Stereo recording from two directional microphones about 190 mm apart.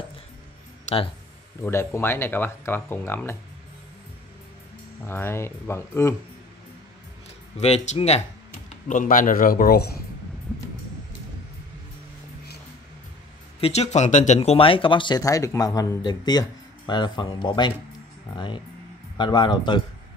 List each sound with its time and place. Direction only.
0.8 s speech: 30° left (ahead or behind)
1.6 s speech: 15° left (ahead or behind)
5.0 s speech: 10° left (ahead or behind)
7.6 s speech: 35° left (ahead or behind); by 10.0 s 55° left (ahead or behind)
13.6 s speech: 35° left (ahead or behind)